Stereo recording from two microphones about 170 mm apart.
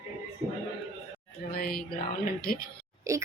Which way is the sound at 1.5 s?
60° left (ahead or behind).